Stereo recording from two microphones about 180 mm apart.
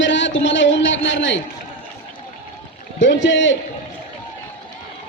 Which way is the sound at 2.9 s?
90° left.